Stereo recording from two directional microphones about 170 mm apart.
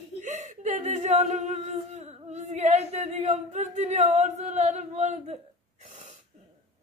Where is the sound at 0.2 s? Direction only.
45° right (ahead or behind).